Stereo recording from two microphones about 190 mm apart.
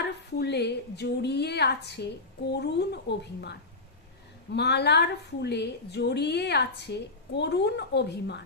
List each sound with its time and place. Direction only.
0.3 s a woman's voice: 60° left (ahead or behind)